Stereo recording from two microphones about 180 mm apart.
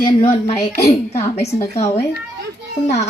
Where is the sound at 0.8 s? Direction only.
15° left (ahead or behind).